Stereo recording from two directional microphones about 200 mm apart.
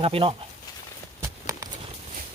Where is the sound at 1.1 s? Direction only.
15° right (ahead or behind).